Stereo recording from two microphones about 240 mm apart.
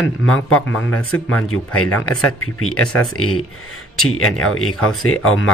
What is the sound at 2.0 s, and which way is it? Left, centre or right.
Speech, left.